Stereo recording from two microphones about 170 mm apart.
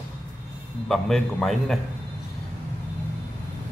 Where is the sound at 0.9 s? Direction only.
5° left (ahead or behind).